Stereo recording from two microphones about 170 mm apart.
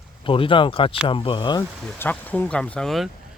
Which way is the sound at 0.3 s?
30° left (ahead or behind).